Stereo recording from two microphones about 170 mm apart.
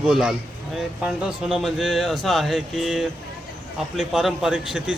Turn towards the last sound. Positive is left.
turn(degrees=-5)  # may be behind; listen again after turning